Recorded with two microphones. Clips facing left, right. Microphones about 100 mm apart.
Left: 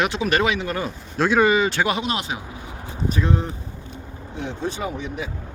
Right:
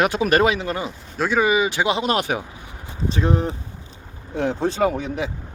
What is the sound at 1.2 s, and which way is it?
Speech, 5° right (ahead or behind).